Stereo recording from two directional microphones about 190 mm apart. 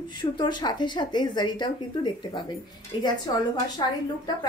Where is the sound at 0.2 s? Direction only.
25° left (ahead or behind).